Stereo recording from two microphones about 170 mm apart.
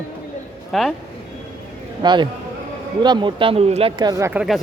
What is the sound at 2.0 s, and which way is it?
Speech, 25° right (ahead or behind).